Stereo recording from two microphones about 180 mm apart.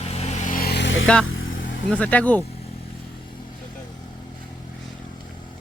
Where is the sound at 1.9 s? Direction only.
5° left (ahead or behind).